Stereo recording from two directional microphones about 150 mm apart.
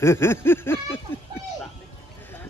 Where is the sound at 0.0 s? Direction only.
15° left (ahead or behind).